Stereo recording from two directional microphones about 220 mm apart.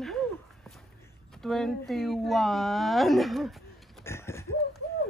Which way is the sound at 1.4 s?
Centre (ahead or behind).